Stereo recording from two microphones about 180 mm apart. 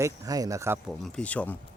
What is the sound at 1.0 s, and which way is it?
Speech, 5° left (ahead or behind).